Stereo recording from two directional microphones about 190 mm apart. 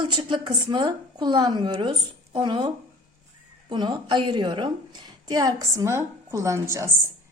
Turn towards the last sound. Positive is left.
turn(degrees=-15)  # may be behind; listen again after turning